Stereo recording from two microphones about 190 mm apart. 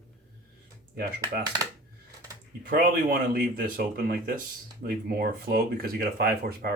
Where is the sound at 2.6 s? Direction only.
50° right (ahead or behind).